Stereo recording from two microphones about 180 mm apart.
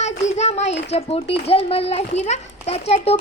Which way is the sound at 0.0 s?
40° left (ahead or behind).